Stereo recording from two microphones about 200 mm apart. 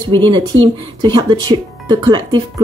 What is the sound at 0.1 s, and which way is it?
Speech, 25° right (ahead or behind).